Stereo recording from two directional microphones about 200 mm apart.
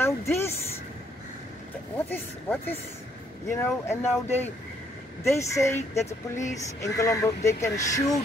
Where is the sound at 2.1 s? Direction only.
10° left (ahead or behind).